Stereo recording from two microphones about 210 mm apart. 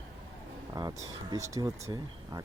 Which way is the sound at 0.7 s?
20° right (ahead or behind).